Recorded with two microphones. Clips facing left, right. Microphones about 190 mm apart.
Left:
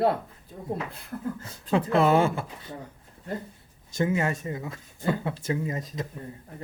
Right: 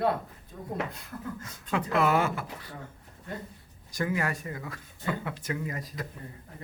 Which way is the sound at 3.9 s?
25° left (ahead or behind).